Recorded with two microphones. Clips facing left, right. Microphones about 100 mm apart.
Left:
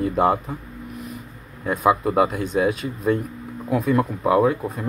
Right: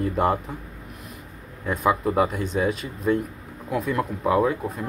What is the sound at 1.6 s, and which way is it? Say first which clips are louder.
Speech: left 3 dB; 15° left (ahead or behind).